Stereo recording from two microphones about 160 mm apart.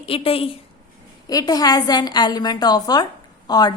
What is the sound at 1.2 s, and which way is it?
A woman's voice, 25° left (ahead or behind).